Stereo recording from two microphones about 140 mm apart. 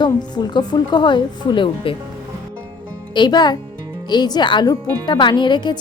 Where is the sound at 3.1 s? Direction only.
30° left (ahead or behind).